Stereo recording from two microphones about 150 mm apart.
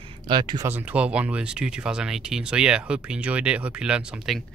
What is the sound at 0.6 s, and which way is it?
Speech, 10° right (ahead or behind).